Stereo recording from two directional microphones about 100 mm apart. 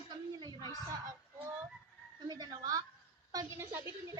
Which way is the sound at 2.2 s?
45° right (ahead or behind).